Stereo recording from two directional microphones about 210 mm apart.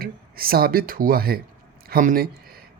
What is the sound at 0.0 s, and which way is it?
A woman's voice, 45° right (ahead or behind).